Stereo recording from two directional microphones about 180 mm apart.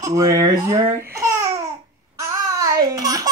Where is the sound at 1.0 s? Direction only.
15° right (ahead or behind).